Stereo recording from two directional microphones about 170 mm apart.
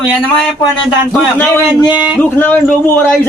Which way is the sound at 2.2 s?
10° left (ahead or behind).